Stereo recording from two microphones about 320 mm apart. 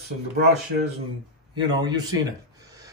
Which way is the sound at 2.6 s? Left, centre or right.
Centre.